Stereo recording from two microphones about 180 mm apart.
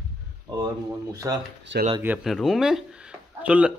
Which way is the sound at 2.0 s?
5° right (ahead or behind).